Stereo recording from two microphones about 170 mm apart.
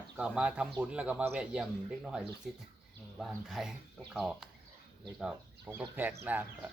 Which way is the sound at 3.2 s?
Centre (ahead or behind).